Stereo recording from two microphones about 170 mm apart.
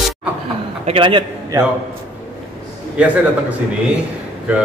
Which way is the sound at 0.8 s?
30° right (ahead or behind).